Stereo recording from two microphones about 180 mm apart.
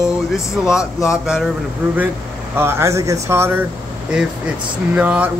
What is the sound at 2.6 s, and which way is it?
Speech, 15° right (ahead or behind).